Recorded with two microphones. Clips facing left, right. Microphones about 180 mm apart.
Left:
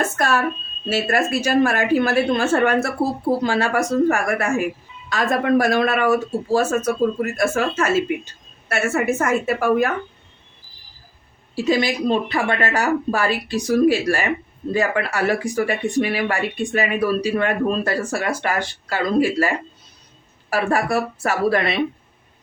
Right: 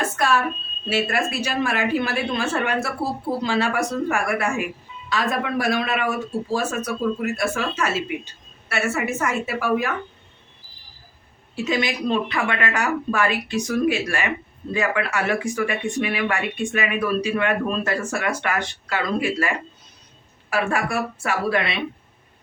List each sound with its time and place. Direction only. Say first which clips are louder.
0.2 s speech: left 1 dB; 45° left (ahead or behind)
11.5 s a woman's voice: left 4 dB; 35° left (ahead or behind)